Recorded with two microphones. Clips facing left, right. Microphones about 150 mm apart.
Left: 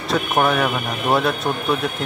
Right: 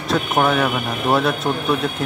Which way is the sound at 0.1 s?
Centre (ahead or behind).